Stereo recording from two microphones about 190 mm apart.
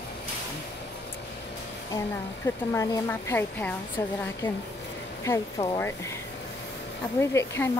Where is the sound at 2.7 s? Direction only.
15° left (ahead or behind).